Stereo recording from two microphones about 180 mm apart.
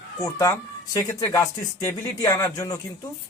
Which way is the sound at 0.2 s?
15° left (ahead or behind).